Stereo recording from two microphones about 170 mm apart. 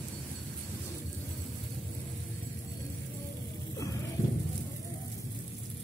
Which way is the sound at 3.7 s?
20° left (ahead or behind).